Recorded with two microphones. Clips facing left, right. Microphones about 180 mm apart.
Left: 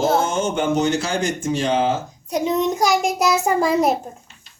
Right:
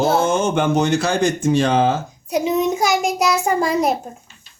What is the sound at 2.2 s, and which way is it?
A child's voice, 5° right (ahead or behind).